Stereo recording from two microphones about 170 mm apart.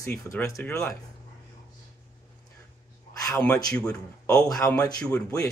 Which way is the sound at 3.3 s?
5° left (ahead or behind).